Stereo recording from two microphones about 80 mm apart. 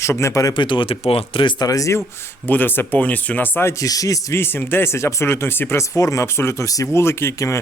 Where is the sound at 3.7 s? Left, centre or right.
Left.